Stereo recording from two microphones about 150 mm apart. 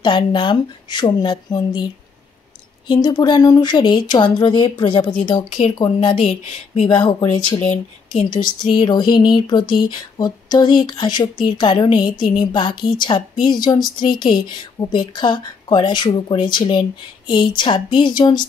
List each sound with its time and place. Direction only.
0.0 s speech: 30° left (ahead or behind)
2.9 s a sound: 30° left (ahead or behind)
5.8 s speech: 35° left (ahead or behind)
6.1 s speech: 45° left (ahead or behind)
7.0 s speech: 30° left (ahead or behind)
7.7 s speech: 45° left (ahead or behind)
8.3 s a sound: 30° left (ahead or behind)
13.9 s speech: 30° left (ahead or behind)